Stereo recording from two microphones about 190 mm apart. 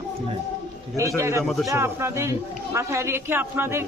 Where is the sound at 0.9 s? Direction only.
15° right (ahead or behind).